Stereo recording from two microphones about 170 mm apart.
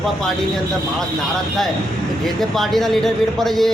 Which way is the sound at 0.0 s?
Centre (ahead or behind).